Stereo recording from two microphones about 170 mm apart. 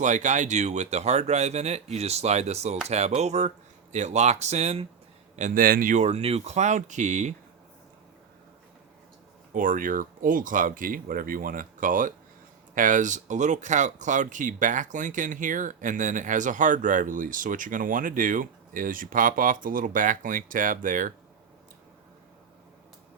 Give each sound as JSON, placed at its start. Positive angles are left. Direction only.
{"t": 0.0, "sound": "speech", "side_deg": -45}
{"t": 5.4, "sound": "speech", "side_deg": -55}
{"t": 9.5, "sound": "speech", "side_deg": -50}